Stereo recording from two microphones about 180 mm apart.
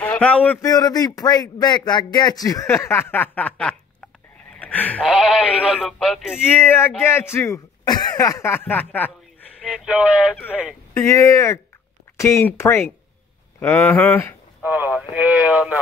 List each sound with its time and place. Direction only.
0.0 s a man's voice: 10° left (ahead or behind)
0.7 s a man's voice: 20° left (ahead or behind)
5.0 s speech: centre (ahead or behind)
6.3 s speech: 10° left (ahead or behind)
9.8 s speech: 5° right (ahead or behind)
10.3 s speech: 10° left (ahead or behind)
14.6 s speech: 10° right (ahead or behind)